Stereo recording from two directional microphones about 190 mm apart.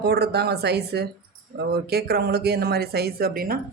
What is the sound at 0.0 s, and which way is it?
Speech, 60° right (ahead or behind).